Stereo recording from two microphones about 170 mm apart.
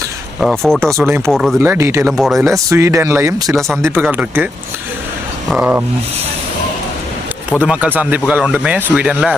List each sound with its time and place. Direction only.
0.3 s speech: centre (ahead or behind)
0.9 s a man's voice: 15° right (ahead or behind)
1.3 s speech: centre (ahead or behind)
1.5 s a man's voice: 15° right (ahead or behind)
2.0 s speech: centre (ahead or behind)
2.6 s a man's voice: 20° right (ahead or behind)
5.5 s a man's voice: 5° right (ahead or behind)
7.6 s a man's voice: 10° right (ahead or behind)